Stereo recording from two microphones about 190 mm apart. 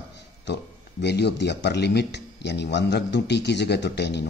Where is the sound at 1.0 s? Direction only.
65° left (ahead or behind).